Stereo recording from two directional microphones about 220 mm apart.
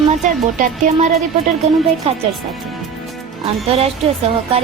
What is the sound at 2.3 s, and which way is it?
Music, centre (ahead or behind).